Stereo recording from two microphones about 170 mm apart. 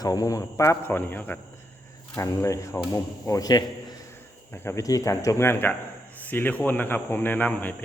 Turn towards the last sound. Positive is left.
turn(degrees=10)  # may be behind; listen again after turning